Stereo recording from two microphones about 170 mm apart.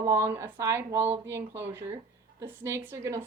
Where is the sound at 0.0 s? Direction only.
15° right (ahead or behind).